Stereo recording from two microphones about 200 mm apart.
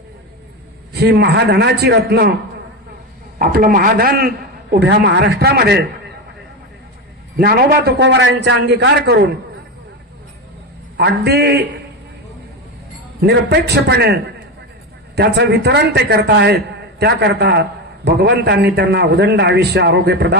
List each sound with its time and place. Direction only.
0.9 s a man's voice: 55° right (ahead or behind)
3.3 s a man's voice: 45° right (ahead or behind)
7.3 s a man's voice: 50° right (ahead or behind)
10.9 s a man's voice: 55° right (ahead or behind)
13.2 s a man's voice: 55° right (ahead or behind)